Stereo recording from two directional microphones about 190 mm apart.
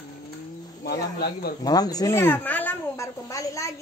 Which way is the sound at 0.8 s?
55° left (ahead or behind).